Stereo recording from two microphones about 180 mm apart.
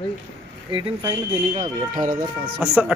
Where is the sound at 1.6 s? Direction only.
50° right (ahead or behind).